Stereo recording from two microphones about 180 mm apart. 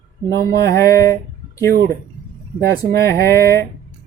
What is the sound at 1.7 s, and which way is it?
Speech, 60° right (ahead or behind).